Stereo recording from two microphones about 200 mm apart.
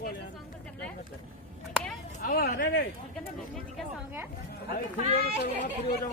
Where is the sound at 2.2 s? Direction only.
45° left (ahead or behind).